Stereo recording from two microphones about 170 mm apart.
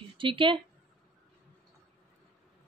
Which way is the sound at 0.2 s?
30° right (ahead or behind).